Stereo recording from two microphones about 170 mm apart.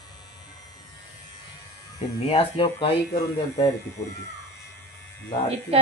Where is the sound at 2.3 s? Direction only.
30° left (ahead or behind).